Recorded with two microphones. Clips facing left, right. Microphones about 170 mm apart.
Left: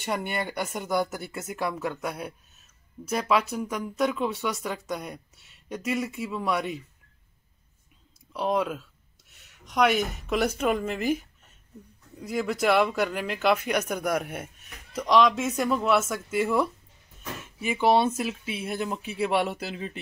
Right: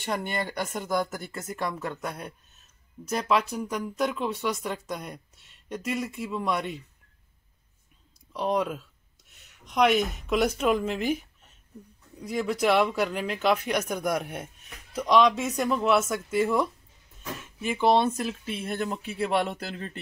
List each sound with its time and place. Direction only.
0.0 s speech: 10° left (ahead or behind)
8.3 s speech: centre (ahead or behind)
9.8 s speech: centre (ahead or behind)
12.2 s speech: 5° left (ahead or behind)